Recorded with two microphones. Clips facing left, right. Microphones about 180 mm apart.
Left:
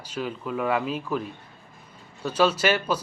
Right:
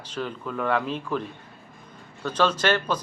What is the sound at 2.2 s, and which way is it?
Speech, 10° left (ahead or behind).